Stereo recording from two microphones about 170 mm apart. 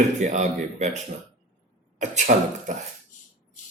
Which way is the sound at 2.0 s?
45° right (ahead or behind).